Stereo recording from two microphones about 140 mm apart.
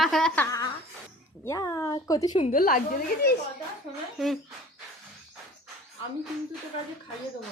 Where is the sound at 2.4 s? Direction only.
90° left.